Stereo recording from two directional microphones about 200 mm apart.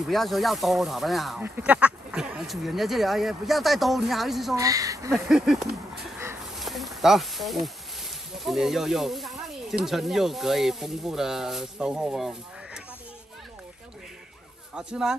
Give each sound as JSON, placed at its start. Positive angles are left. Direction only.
{"t": 0.0, "sound": "speech", "side_deg": 0}
{"t": 4.6, "sound": "speech", "side_deg": -15}
{"t": 5.1, "sound": "speech", "side_deg": 0}
{"t": 6.6, "sound": "a sound", "side_deg": 0}
{"t": 9.8, "sound": "speech", "side_deg": 0}
{"t": 14.7, "sound": "speech", "side_deg": -5}